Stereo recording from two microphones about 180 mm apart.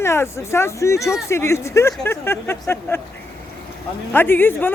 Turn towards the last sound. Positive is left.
turn(degrees=10)  # may be behind; listen again after turning